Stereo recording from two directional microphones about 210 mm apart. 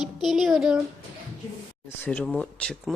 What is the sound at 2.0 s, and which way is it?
Speech, 5° left (ahead or behind).